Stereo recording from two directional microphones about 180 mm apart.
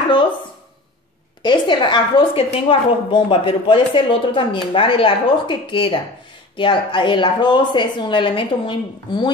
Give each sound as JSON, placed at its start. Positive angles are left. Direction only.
{"t": 1.4, "sound": "a woman's voice", "side_deg": 25}